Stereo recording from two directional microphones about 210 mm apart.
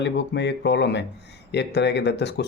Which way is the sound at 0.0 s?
55° left (ahead or behind).